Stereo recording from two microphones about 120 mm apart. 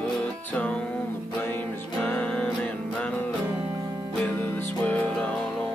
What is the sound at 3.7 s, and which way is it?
Music, 30° right (ahead or behind).